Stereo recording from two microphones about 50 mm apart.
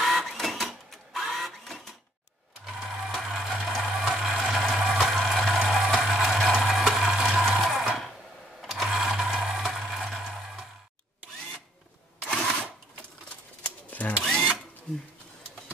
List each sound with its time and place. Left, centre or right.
0.0 s printer: centre
2.6 s a sound: centre
3.9 s music: centre
7.6 s sewing machine: centre
8.8 s music: centre
9.7 s a sound: centre
12.4 s camera: centre
13.8 s drill: left
14.2 s drill: centre